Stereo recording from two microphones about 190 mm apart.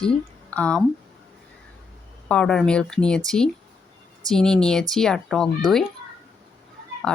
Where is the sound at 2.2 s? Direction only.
5° left (ahead or behind).